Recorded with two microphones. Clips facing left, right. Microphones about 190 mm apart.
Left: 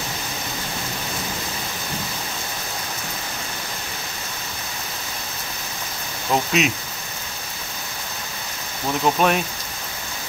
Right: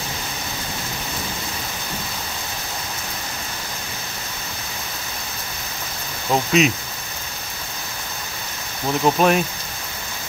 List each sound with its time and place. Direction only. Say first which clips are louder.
6.3 s speech: right 3 dB; centre (ahead or behind)
9.0 s speech: right 2 dB; centre (ahead or behind)